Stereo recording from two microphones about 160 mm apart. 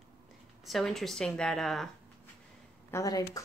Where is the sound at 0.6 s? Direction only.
Centre (ahead or behind).